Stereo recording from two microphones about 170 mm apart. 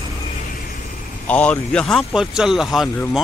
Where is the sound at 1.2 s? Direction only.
10° left (ahead or behind).